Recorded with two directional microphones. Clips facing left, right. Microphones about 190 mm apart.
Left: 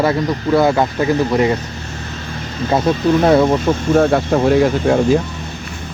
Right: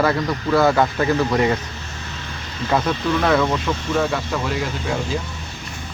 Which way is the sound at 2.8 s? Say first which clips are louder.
Left 7 dB; 35° left (ahead or behind).